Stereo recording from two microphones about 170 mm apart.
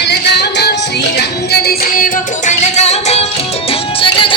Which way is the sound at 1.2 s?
70° left (ahead or behind).